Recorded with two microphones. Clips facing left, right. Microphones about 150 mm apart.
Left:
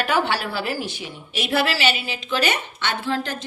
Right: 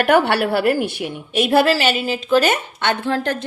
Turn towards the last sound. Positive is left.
turn(degrees=-55)  # may be behind; listen again after turning